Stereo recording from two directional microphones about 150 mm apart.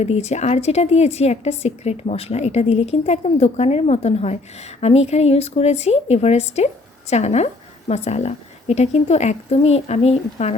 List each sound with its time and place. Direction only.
0.0 s a woman's voice: 45° left (ahead or behind)